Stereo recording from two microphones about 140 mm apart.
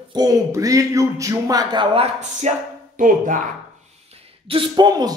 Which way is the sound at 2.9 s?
70° right (ahead or behind).